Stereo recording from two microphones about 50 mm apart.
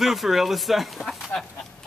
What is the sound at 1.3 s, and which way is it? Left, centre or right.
Speech, left.